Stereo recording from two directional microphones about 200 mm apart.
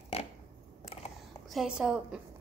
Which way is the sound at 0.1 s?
30° left (ahead or behind).